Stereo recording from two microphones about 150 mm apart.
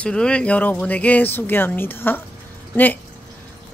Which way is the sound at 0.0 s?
5° left (ahead or behind).